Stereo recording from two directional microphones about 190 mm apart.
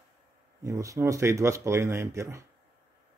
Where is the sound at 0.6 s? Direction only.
15° right (ahead or behind).